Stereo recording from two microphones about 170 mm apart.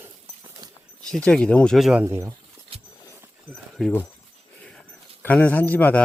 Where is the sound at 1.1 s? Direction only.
5° left (ahead or behind).